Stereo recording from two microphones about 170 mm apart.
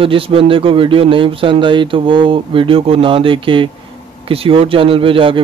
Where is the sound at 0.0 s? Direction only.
35° right (ahead or behind).